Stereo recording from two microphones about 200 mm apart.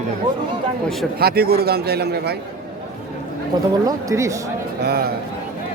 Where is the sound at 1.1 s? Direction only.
50° right (ahead or behind).